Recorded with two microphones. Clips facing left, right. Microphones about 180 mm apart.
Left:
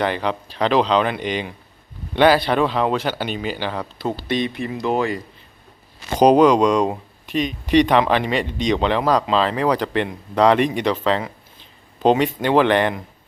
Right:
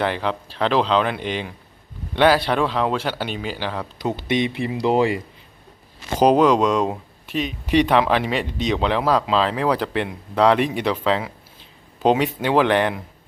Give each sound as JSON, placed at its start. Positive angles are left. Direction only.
{"t": 0.0, "sound": "speech", "side_deg": 0}
{"t": 4.2, "sound": "speech", "side_deg": -20}
{"t": 6.1, "sound": "speech", "side_deg": 0}